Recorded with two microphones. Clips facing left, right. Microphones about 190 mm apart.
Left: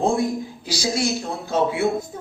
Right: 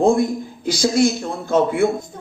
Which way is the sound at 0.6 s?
55° right (ahead or behind).